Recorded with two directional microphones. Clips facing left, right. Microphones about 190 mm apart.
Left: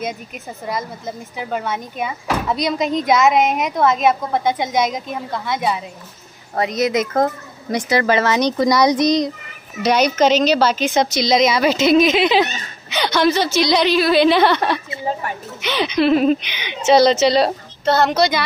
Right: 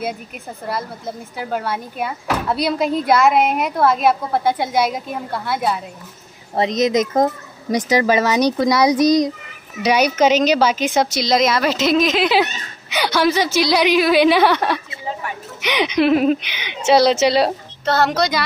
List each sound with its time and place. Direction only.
0.7 s speech: 5° right (ahead or behind)
6.5 s speech: 20° right (ahead or behind)
10.9 s speech: centre (ahead or behind)
15.1 s a sound: 35° left (ahead or behind)
15.6 s speech: 15° right (ahead or behind); by 18.4 s centre (ahead or behind)